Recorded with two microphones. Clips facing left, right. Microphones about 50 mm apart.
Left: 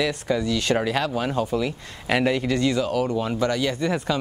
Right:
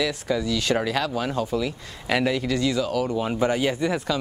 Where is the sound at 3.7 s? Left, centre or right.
Centre.